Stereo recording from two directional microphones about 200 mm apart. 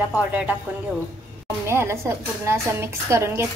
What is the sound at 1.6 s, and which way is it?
A woman's voice, 15° right (ahead or behind).